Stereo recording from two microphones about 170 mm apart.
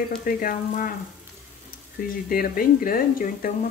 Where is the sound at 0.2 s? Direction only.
55° left (ahead or behind).